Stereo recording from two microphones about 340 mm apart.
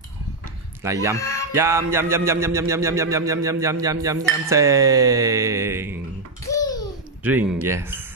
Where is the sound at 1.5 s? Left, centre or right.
Centre.